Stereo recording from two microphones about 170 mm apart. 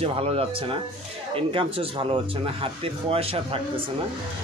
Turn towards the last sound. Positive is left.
turn(degrees=-35)  # may be behind; listen again after turning